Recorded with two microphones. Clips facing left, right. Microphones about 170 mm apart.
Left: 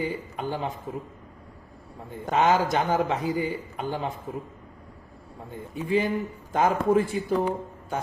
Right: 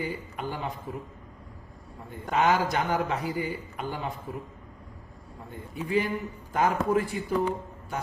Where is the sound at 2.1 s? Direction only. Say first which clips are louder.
Left 2 dB; 25° left (ahead or behind).